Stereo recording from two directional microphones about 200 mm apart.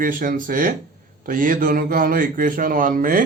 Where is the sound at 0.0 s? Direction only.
45° right (ahead or behind).